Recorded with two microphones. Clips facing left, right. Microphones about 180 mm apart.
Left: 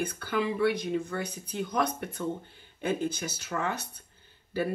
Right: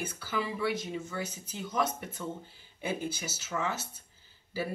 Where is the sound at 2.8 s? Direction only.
10° right (ahead or behind).